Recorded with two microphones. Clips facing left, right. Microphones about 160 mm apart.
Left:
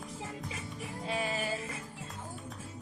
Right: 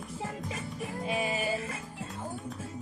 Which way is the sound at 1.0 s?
15° right (ahead or behind).